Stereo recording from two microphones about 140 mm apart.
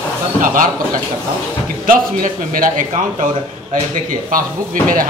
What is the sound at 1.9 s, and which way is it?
Speech, 85° right.